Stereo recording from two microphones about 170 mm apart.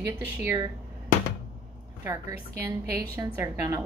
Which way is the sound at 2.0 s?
15° right (ahead or behind).